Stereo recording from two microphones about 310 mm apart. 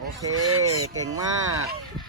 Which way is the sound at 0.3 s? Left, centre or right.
Right.